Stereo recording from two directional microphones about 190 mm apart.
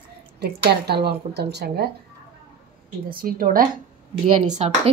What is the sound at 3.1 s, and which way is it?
Speech, 50° right (ahead or behind).